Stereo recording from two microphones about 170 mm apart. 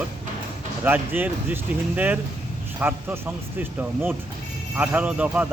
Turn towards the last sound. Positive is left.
turn(degrees=-10)  # may be behind; listen again after turning